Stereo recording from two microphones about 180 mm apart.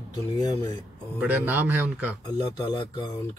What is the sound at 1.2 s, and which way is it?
Speech, 10° right (ahead or behind).